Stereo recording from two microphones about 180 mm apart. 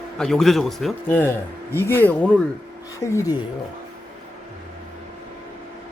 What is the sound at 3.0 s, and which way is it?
Speech, 20° left (ahead or behind).